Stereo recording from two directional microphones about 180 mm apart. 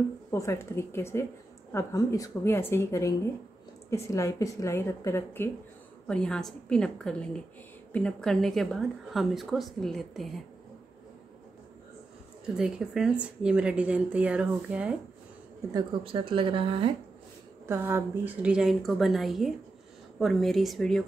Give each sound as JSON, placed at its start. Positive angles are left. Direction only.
{"t": 0.3, "sound": "a woman's voice", "side_deg": 15}
{"t": 12.5, "sound": "speech", "side_deg": -5}
{"t": 15.7, "sound": "speech", "side_deg": -30}
{"t": 17.6, "sound": "speech", "side_deg": -10}